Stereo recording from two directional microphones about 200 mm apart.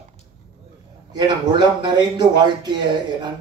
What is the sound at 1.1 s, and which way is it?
A man's voice, 20° right (ahead or behind).